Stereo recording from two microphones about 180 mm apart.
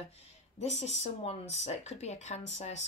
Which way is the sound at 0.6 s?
40° left (ahead or behind).